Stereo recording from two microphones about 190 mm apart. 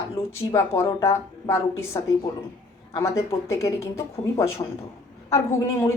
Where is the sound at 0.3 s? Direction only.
15° left (ahead or behind).